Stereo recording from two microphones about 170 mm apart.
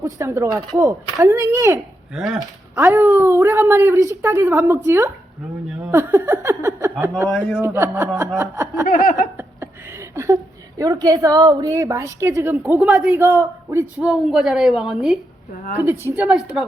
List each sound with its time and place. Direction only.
0.0 s a woman's voice: 15° right (ahead or behind)
2.1 s a woman's voice: centre (ahead or behind)
2.4 s a woman's voice: 15° right (ahead or behind)
5.8 s a sound: 10° right (ahead or behind)
7.3 s a woman's voice: 5° left (ahead or behind)
7.6 s a woman's voice: 15° right (ahead or behind)
8.9 s a sound: 55° left (ahead or behind)
9.4 s a sound: 15° right (ahead or behind)
10.8 s a woman's voice: 20° right (ahead or behind)
14.0 s a woman's voice: 5° right (ahead or behind)
15.8 s a woman's voice: 10° right (ahead or behind)